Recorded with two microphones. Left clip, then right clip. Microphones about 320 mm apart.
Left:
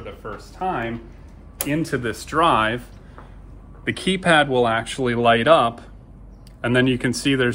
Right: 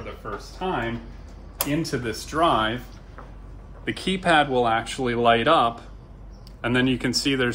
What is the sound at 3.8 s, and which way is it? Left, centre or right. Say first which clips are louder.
Speech: left 3 dB; left.